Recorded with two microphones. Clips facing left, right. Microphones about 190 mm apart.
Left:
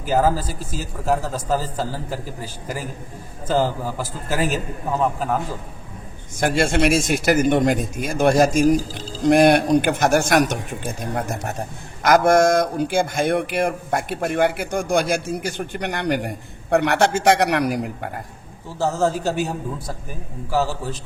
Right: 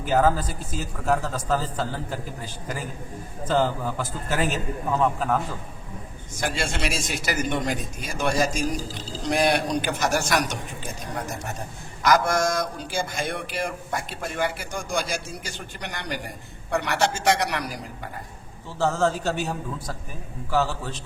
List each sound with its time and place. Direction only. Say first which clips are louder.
0.0 s a man's voice: left 2 dB; 5° left (ahead or behind)
6.4 s speech: left 9 dB; 55° left (ahead or behind)
18.8 s a man's voice: left 2 dB; 10° left (ahead or behind)